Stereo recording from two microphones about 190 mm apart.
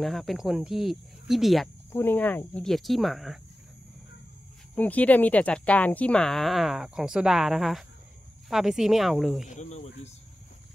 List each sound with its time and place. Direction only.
0.0 s speech: centre (ahead or behind)
1.9 s speech: 10° left (ahead or behind)
4.7 s speech: 5° left (ahead or behind)
9.5 s speech: 40° left (ahead or behind)